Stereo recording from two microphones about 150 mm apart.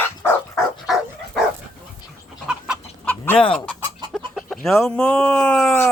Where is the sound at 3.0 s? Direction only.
15° left (ahead or behind).